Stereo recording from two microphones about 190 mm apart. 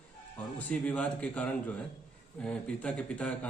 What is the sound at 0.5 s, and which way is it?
A man's voice, 5° left (ahead or behind).